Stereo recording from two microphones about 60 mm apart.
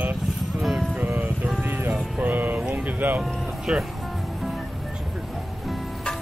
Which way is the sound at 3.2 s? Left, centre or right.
Centre.